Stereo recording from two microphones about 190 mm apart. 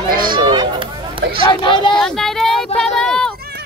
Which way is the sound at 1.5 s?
25° left (ahead or behind).